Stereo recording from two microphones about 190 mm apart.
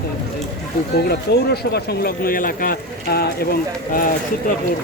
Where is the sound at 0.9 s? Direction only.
55° left (ahead or behind).